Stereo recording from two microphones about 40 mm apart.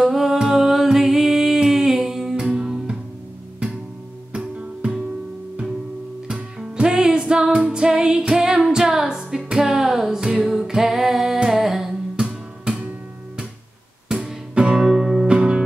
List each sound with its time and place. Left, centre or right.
0.0 s music: centre
6.2 s music: centre
14.0 s music: centre
14.5 s music: right
14.8 s music: centre
15.2 s music: right